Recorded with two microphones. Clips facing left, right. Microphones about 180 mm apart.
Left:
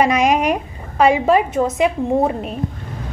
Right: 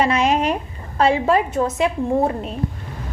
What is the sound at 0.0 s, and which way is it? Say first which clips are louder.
A woman's voice: left 2 dB; 15° left (ahead or behind).